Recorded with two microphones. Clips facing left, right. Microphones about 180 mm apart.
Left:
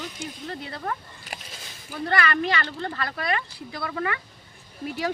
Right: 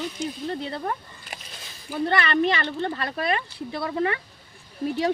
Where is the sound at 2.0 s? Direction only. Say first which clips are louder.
Right 2 dB; 25° right (ahead or behind).